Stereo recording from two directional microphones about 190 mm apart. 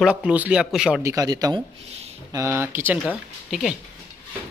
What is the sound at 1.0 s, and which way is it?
Speech, 20° right (ahead or behind).